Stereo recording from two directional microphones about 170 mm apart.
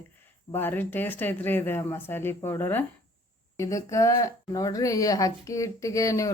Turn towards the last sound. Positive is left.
turn(degrees=20)  # may be behind; listen again after turning